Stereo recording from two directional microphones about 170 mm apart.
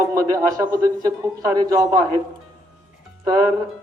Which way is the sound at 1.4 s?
20° right (ahead or behind).